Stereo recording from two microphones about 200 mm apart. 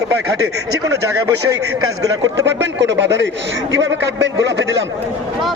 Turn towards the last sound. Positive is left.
turn(degrees=-65)  # may be behind; listen again after turning